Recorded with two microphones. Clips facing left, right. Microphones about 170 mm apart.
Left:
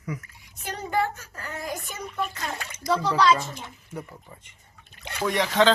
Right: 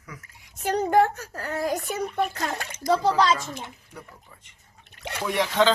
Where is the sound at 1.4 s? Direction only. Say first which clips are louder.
Right 8 dB; 65° right (ahead or behind).